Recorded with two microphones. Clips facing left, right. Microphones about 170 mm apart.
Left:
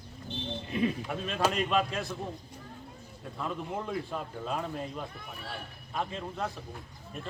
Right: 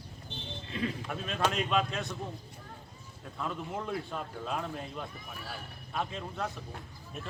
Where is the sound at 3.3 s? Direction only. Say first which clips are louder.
Left 1 dB; centre (ahead or behind).